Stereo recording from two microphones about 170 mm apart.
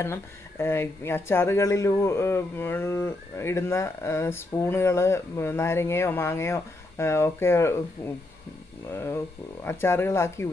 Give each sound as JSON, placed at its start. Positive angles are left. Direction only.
{"t": 0.0, "sound": "speech", "side_deg": 15}